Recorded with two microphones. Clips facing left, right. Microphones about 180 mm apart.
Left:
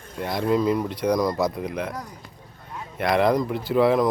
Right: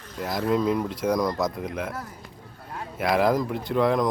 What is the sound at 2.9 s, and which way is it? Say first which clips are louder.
Speech: left 2 dB; 5° right (ahead or behind).